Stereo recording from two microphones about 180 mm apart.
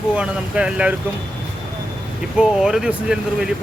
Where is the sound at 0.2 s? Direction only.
5° right (ahead or behind).